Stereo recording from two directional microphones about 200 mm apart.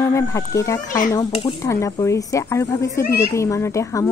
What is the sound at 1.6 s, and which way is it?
A woman's voice, 15° left (ahead or behind).